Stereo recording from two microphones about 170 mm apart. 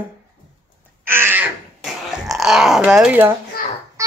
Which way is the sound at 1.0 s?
10° right (ahead or behind).